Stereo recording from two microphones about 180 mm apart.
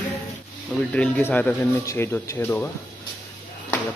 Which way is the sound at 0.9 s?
10° left (ahead or behind).